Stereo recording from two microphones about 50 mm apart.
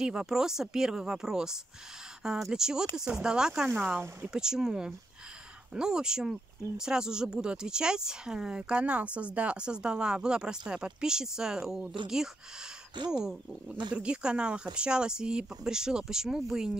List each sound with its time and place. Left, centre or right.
0.0 s speech: centre
2.5 s speech: centre
3.7 s speech: right
4.3 s speech: centre
13.1 s speech: centre